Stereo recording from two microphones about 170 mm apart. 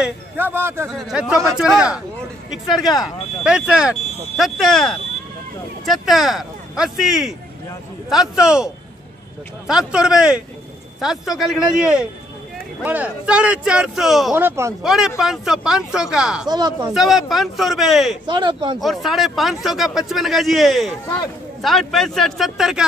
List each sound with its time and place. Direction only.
0.0 s speech: 10° right (ahead or behind)
0.9 s speech: 5° right (ahead or behind)
3.0 s speech: 5° right (ahead or behind)
14.3 s speech: 15° right (ahead or behind)
14.8 s speech: centre (ahead or behind)
16.4 s speech: 25° right (ahead or behind)
16.9 s speech: centre (ahead or behind)
18.2 s speech: 25° right (ahead or behind)
18.8 s speech: centre (ahead or behind)